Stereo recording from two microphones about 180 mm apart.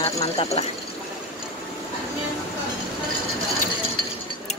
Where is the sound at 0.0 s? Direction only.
35° left (ahead or behind).